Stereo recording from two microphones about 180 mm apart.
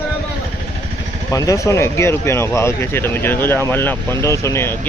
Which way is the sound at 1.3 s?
20° left (ahead or behind).